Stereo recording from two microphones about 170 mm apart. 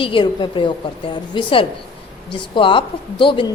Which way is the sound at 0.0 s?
30° left (ahead or behind).